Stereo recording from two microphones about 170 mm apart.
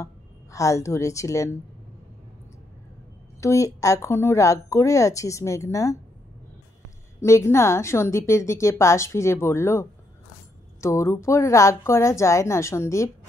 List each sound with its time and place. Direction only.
0.0 s a woman's voice: 20° left (ahead or behind)
3.3 s a woman's voice: 20° left (ahead or behind)
7.2 s a woman's voice: 15° left (ahead or behind)